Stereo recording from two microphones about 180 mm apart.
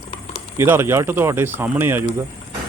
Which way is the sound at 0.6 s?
15° right (ahead or behind).